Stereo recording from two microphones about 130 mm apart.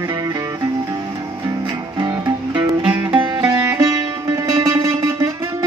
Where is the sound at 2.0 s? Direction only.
30° right (ahead or behind).